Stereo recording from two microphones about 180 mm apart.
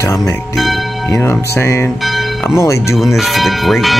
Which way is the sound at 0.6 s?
Centre (ahead or behind).